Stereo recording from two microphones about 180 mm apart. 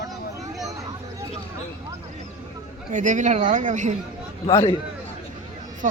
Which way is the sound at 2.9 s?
45° right (ahead or behind).